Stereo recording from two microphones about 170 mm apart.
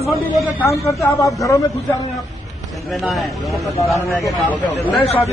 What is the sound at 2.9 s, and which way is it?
Speech, centre (ahead or behind).